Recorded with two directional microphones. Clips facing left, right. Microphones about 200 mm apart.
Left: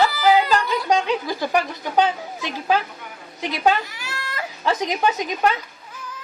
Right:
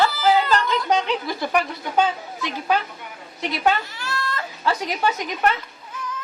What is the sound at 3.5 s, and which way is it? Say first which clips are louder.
Baby cry: left 2 dB; 15° left (ahead or behind).